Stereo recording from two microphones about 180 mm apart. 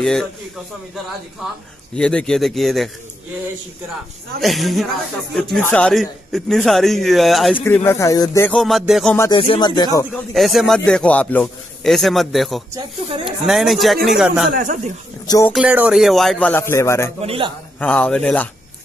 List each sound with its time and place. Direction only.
0.0 s a man's voice: 5° left (ahead or behind)
1.4 s a man's voice: centre (ahead or behind)
4.4 s a man's voice: centre (ahead or behind)
7.6 s speech: 15° left (ahead or behind)
8.5 s a man's voice: centre (ahead or behind)
9.3 s speech: 30° left (ahead or behind)
10.1 s a man's voice: centre (ahead or behind)
14.5 s speech: 45° right (ahead or behind)
15.2 s speech: 15° left (ahead or behind)
15.5 s a man's voice: 5° right (ahead or behind); by 17.1 s 15° left (ahead or behind)
17.2 s a man's voice: 30° right (ahead or behind)
17.7 s speech: 5° left (ahead or behind)